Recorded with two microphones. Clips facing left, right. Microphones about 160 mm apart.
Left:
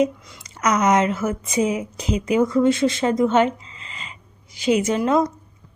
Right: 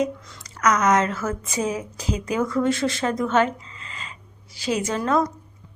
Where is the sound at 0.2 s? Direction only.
15° left (ahead or behind).